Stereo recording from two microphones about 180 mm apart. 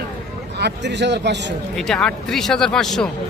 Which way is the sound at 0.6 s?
75° right (ahead or behind).